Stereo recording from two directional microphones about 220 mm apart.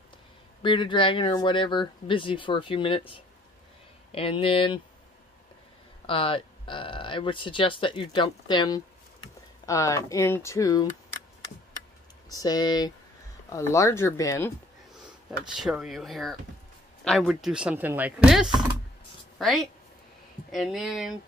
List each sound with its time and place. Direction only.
0.6 s speech: 20° left (ahead or behind)
6.0 s speech: 25° left (ahead or behind)
12.3 s speech: 15° left (ahead or behind)
15.5 s speech: centre (ahead or behind)